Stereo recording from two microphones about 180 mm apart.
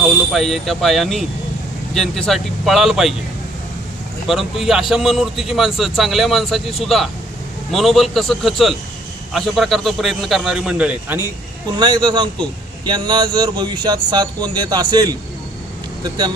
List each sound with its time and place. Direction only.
0.3 s a man's voice: centre (ahead or behind)
4.3 s a man's voice: centre (ahead or behind)
11.8 s a man's voice: 25° right (ahead or behind)